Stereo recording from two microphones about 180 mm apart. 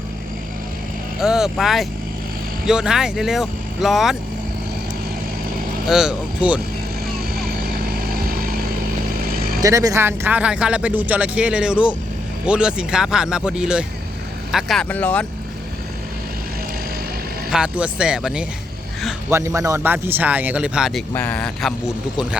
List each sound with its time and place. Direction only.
1.2 s speech: 5° right (ahead or behind)
5.9 s speech: 5° right (ahead or behind)
8.1 s vehicle: 55° right (ahead or behind)
9.6 s speech: 20° right (ahead or behind); by 15.3 s 10° left (ahead or behind)
17.5 s speech: 5° right (ahead or behind)
19.3 s speech: 15° right (ahead or behind)
21.1 s speech: 10° left (ahead or behind)